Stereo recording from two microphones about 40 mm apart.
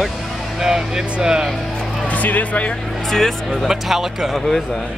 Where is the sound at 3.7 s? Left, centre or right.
Centre.